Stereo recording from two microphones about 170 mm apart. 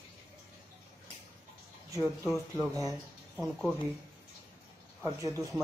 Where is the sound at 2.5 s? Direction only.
20° right (ahead or behind).